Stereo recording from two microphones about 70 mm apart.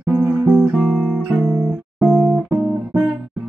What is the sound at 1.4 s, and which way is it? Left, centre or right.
Music, right.